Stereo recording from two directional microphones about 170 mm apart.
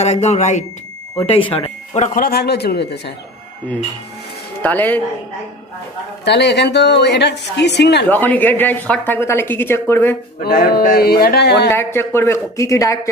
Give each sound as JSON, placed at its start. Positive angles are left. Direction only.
{"t": 0.0, "sound": "speech", "side_deg": 40}
{"t": 1.3, "sound": "speech", "side_deg": 30}
{"t": 2.0, "sound": "speech", "side_deg": 55}
{"t": 4.6, "sound": "a woman's voice", "side_deg": 10}
{"t": 6.2, "sound": "a woman's voice", "side_deg": 90}
{"t": 8.0, "sound": "a woman's voice", "side_deg": 10}
{"t": 10.4, "sound": "speech", "side_deg": 65}
{"t": 11.7, "sound": "a woman's voice", "side_deg": 15}